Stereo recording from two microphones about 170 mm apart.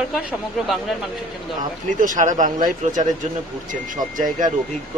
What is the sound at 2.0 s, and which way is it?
Speech, 50° right (ahead or behind).